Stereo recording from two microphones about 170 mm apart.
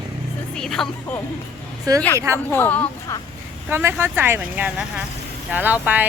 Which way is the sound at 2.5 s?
10° left (ahead or behind).